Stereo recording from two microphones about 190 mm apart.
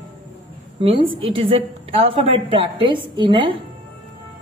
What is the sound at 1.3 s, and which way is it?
A woman's voice, 30° right (ahead or behind).